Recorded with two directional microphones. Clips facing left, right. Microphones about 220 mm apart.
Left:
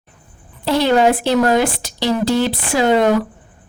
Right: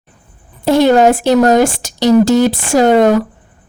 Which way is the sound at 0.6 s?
45° right (ahead or behind).